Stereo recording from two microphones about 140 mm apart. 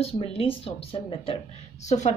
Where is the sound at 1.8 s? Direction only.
55° left (ahead or behind).